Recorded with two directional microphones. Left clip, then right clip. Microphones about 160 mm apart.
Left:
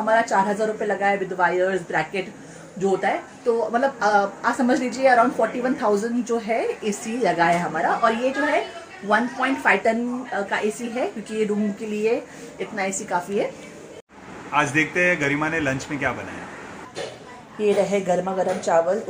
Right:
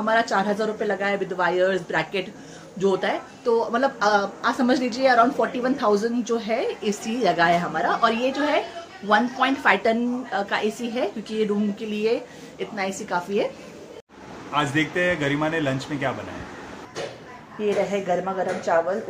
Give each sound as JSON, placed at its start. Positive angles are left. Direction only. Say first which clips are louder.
{"t": 0.0, "sound": "a woman's voice", "louder": "left 2 dB", "side_deg": 0}
{"t": 13.1, "sound": "a woman's voice", "louder": "even", "side_deg": -5}
{"t": 14.5, "sound": "a man's voice", "louder": "left 3 dB", "side_deg": -15}
{"t": 17.6, "sound": "speech", "louder": "left 3 dB", "side_deg": 15}